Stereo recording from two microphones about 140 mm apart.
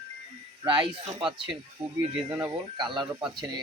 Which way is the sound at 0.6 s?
35° right (ahead or behind).